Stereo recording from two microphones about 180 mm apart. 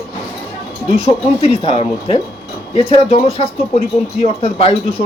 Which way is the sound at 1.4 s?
30° left (ahead or behind).